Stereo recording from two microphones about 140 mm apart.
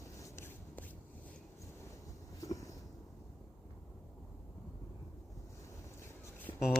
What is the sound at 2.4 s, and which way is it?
Vehicle, 25° left (ahead or behind).